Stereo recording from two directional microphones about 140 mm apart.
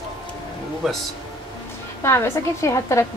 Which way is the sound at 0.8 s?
Centre (ahead or behind).